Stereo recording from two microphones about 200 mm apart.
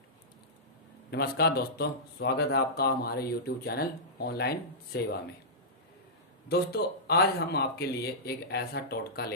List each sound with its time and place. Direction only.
1.1 s speech: 50° left (ahead or behind)
6.5 s speech: 55° left (ahead or behind)